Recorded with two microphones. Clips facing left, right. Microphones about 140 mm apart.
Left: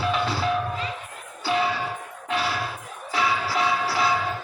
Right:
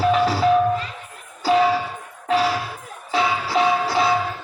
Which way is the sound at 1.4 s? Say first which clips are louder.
Right 7 dB; 40° right (ahead or behind).